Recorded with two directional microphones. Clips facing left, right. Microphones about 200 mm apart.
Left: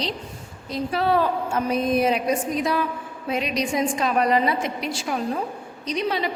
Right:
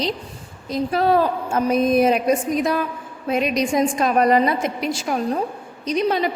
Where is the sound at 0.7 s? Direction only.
45° right (ahead or behind).